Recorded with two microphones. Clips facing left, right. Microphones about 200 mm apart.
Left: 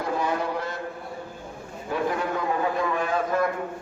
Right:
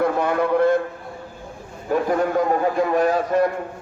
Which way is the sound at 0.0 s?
55° right (ahead or behind).